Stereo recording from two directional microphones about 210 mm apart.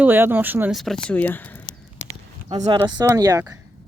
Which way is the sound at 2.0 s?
60° left (ahead or behind).